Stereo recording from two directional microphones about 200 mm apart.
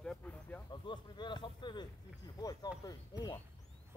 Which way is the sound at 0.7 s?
20° left (ahead or behind).